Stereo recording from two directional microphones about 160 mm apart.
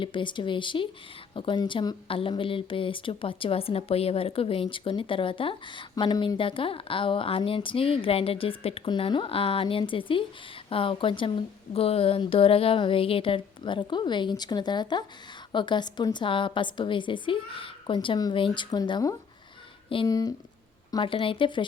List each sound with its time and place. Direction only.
0.0 s a woman's voice: 30° left (ahead or behind)